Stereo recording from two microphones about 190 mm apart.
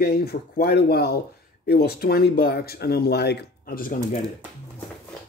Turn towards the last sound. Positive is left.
turn(degrees=50)  # may be behind; listen again after turning